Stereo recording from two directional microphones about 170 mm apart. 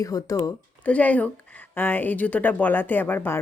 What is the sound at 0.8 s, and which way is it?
Speech, 10° left (ahead or behind).